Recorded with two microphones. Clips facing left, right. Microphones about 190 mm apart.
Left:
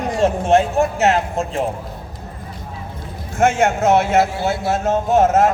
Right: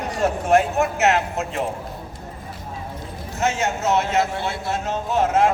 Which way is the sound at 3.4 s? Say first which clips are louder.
Left 7 dB; 55° left (ahead or behind).